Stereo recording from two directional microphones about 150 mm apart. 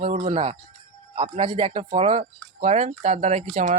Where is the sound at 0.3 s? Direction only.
40° right (ahead or behind).